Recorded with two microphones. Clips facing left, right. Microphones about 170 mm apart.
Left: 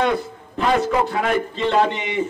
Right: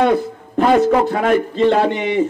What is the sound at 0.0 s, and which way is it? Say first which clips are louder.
A man's voice: right 5 dB; 45° right (ahead or behind).